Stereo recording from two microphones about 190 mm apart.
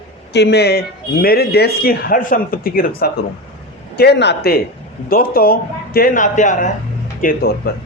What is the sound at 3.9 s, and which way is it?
A man's voice, 60° left (ahead or behind).